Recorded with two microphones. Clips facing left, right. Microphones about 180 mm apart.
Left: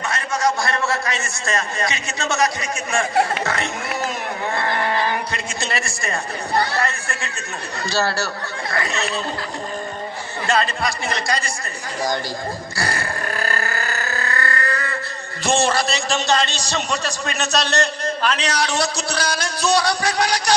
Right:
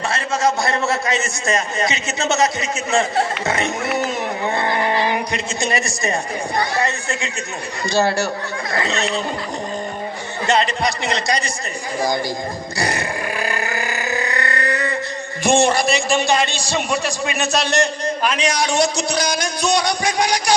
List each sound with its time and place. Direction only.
0.1 s a man's voice: 25° right (ahead or behind)
10.4 s a man's voice: 20° right (ahead or behind)
12.7 s grunt: 20° right (ahead or behind)
15.4 s a man's voice: 15° right (ahead or behind)